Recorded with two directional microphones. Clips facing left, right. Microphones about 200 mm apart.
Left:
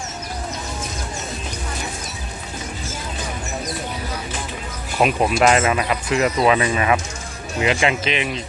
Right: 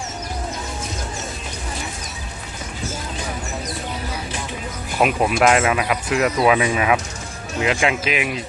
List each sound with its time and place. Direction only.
4.9 s speech: 5° right (ahead or behind)